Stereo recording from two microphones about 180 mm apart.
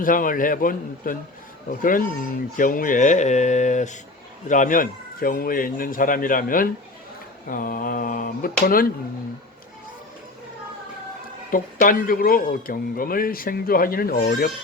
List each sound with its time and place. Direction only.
0.0 s speech: 50° left (ahead or behind)
11.5 s speech: 50° left (ahead or behind)